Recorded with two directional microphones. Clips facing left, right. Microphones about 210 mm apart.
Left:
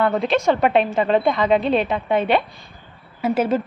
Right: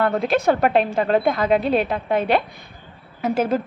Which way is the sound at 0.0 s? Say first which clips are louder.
Even; centre (ahead or behind).